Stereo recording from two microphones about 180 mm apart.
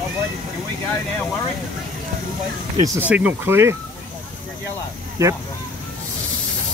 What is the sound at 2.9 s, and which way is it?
Speech, 10° right (ahead or behind).